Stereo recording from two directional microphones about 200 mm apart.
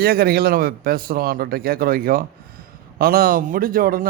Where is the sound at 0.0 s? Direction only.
50° right (ahead or behind).